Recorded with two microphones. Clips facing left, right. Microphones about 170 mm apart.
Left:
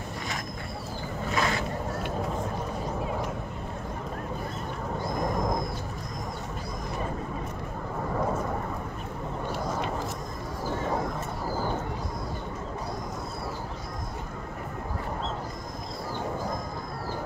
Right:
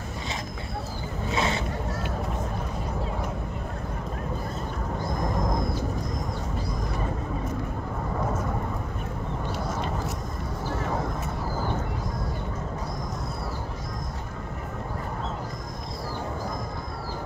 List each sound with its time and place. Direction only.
1.3 s vehicle: 25° right (ahead or behind)